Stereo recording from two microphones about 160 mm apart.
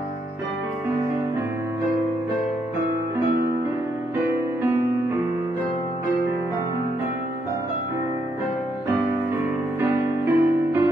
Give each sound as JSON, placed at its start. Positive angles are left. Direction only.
{"t": 9.8, "sound": "music", "side_deg": -15}